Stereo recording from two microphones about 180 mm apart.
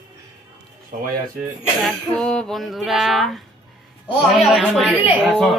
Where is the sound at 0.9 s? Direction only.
50° right (ahead or behind).